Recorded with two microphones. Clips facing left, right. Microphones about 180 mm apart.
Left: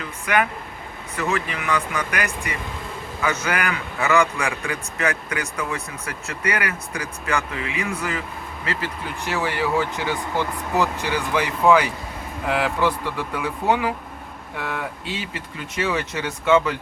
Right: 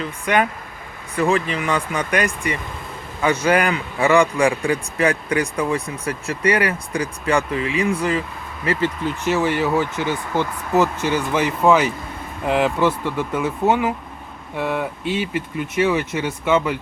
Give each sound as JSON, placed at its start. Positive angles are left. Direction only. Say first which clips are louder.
{"t": 0.0, "sound": "a man's voice", "louder": "right 3 dB", "side_deg": -30}